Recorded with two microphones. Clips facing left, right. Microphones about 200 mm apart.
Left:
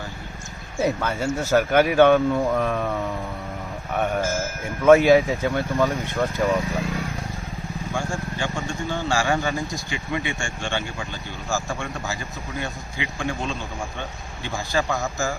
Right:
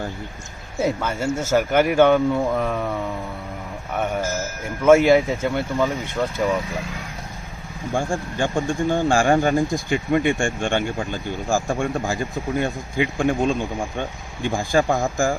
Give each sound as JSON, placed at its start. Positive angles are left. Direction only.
{"t": 0.8, "sound": "speech", "side_deg": -5}
{"t": 4.8, "sound": "speech", "side_deg": -5}
{"t": 5.5, "sound": "speech", "side_deg": -15}
{"t": 7.9, "sound": "speech", "side_deg": -50}